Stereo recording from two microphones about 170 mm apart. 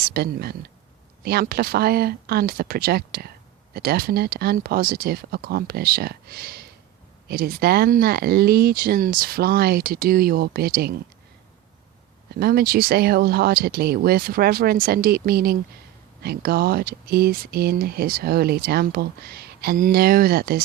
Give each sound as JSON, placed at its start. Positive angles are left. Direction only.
{"t": 0.0, "sound": "speech", "side_deg": -65}
{"t": 12.4, "sound": "speech", "side_deg": -65}